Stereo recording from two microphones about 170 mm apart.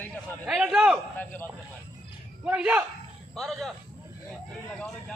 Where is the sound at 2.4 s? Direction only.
5° right (ahead or behind).